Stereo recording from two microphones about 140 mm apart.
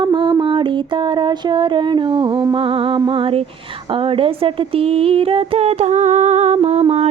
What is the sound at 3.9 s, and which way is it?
Speech, 40° right (ahead or behind).